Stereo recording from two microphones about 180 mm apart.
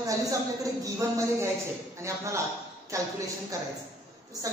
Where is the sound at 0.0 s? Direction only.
20° right (ahead or behind).